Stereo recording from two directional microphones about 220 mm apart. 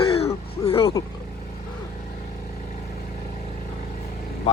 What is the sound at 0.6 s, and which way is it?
Speech, 25° left (ahead or behind).